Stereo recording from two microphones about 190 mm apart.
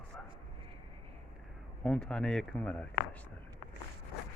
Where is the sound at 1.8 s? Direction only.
5° left (ahead or behind).